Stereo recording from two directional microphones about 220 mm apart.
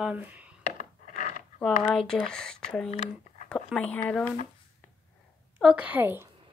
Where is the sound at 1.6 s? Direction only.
5° left (ahead or behind).